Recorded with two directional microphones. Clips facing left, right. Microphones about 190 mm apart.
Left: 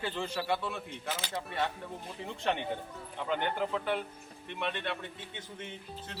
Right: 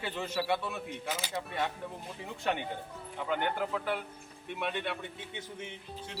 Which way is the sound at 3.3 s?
5° right (ahead or behind).